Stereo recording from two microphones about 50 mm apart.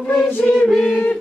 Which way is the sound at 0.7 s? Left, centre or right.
Centre.